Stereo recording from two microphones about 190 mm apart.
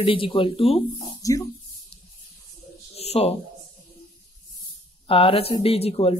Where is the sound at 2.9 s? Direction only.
30° left (ahead or behind).